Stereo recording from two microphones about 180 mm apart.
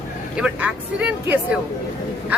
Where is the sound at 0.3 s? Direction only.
5° right (ahead or behind).